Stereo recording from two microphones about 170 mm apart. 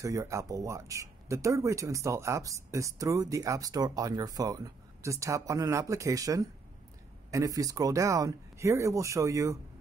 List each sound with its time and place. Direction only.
0.0 s speech: 15° right (ahead or behind)